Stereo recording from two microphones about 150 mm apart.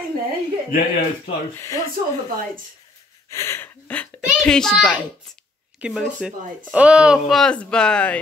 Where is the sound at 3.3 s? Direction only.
15° left (ahead or behind).